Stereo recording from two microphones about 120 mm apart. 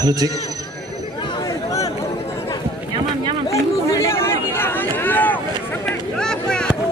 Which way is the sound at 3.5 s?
25° left (ahead or behind).